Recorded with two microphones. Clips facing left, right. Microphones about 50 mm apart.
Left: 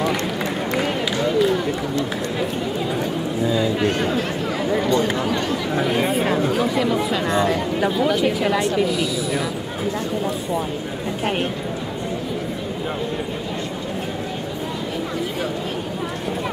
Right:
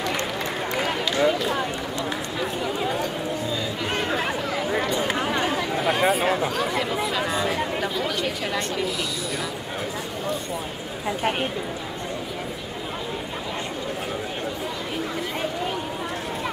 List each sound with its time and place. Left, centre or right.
0.7 s run: centre
4.6 s a sound: centre
5.1 s chatter: right
5.9 s chatter: centre
6.5 s speech: centre